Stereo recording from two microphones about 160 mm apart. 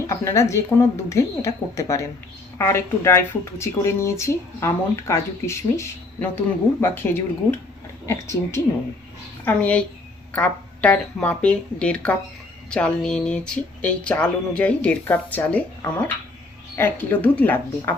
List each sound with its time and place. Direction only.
0.1 s a woman's voice: 20° left (ahead or behind)
16.7 s speech: 10° left (ahead or behind)